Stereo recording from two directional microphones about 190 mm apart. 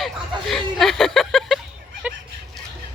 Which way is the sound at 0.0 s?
Centre (ahead or behind).